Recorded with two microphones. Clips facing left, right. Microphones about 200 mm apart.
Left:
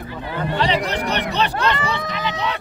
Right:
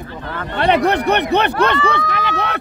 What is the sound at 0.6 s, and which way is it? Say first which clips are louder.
Speech: right 8 dB; 60° right (ahead or behind).